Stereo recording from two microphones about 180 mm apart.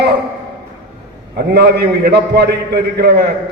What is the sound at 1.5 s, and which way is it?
A man's voice, 65° right (ahead or behind).